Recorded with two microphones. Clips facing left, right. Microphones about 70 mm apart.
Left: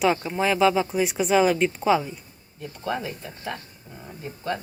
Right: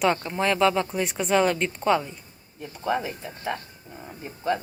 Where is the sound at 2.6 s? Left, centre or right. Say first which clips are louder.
Right 2 dB; centre.